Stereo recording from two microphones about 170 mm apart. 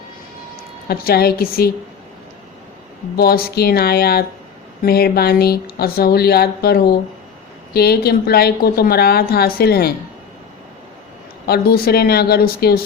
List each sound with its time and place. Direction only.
0.9 s a woman's voice: 65° left (ahead or behind)
3.2 s a woman's voice: 65° left (ahead or behind)
11.4 s speech: 65° left (ahead or behind)